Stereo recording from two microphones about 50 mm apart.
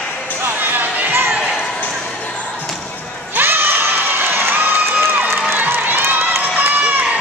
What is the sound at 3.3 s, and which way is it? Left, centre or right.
Crowd, right.